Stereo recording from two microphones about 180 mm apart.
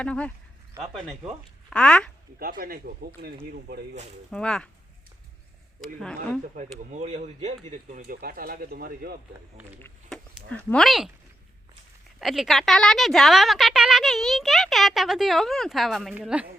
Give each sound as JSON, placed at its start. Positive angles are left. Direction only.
{"t": 0.0, "sound": "speech", "side_deg": 5}
{"t": 2.4, "sound": "speech", "side_deg": -55}
{"t": 4.3, "sound": "speech", "side_deg": 5}
{"t": 5.8, "sound": "speech", "side_deg": 5}
{"t": 6.6, "sound": "speech", "side_deg": -45}
{"t": 8.0, "sound": "speech", "side_deg": -55}
{"t": 10.1, "sound": "a sound", "side_deg": 0}
{"t": 10.7, "sound": "speech", "side_deg": 0}
{"t": 12.2, "sound": "speech", "side_deg": 0}